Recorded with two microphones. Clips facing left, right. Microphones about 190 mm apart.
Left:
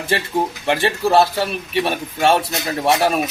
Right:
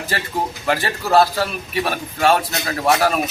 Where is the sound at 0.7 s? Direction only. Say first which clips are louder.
Left 1 dB; 25° left (ahead or behind).